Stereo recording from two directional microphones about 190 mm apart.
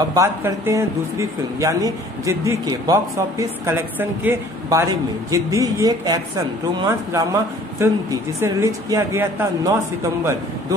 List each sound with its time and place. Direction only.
0.1 s speech: 15° right (ahead or behind)